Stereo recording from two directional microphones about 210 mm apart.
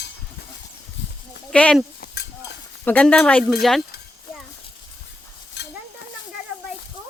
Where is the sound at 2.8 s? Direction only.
5° left (ahead or behind).